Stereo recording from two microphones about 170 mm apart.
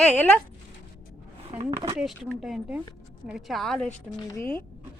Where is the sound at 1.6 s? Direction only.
15° right (ahead or behind).